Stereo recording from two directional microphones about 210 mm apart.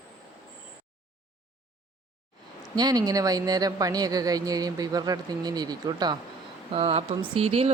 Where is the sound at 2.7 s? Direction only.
20° right (ahead or behind).